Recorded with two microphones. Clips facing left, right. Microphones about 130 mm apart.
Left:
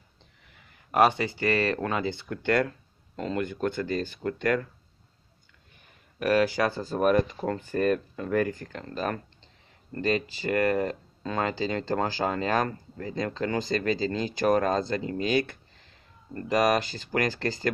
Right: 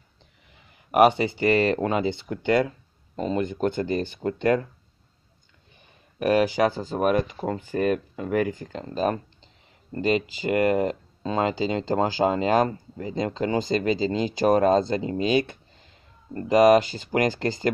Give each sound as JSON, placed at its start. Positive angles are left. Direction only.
{"t": 0.9, "sound": "speech", "side_deg": -20}
{"t": 6.1, "sound": "speech", "side_deg": -20}